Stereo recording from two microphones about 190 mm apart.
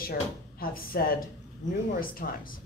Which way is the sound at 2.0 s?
50° left (ahead or behind).